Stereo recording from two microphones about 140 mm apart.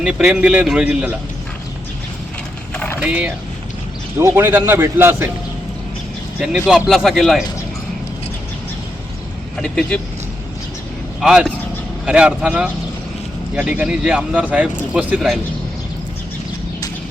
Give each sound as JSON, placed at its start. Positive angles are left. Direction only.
{"t": 0.0, "sound": "a man's voice", "side_deg": -5}
{"t": 2.7, "sound": "a sound", "side_deg": 10}
{"t": 3.0, "sound": "a man's voice", "side_deg": -10}
{"t": 6.4, "sound": "a man's voice", "side_deg": -5}
{"t": 9.6, "sound": "a man's voice", "side_deg": 5}
{"t": 11.2, "sound": "a man's voice", "side_deg": -5}